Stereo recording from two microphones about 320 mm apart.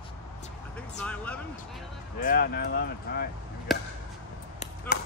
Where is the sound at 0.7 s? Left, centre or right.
Centre.